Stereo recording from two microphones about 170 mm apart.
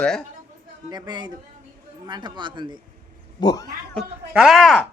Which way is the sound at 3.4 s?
20° left (ahead or behind).